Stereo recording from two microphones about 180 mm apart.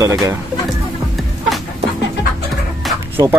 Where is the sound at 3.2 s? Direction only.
15° right (ahead or behind).